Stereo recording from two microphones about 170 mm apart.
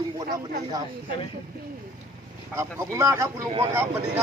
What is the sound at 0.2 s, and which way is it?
Speech, 25° right (ahead or behind).